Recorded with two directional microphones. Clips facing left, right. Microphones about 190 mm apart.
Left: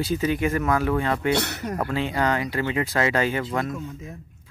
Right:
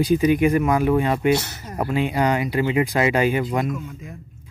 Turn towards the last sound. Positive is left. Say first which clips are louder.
# right 4 dB
turn(degrees=-15)  # may be behind; listen again after turning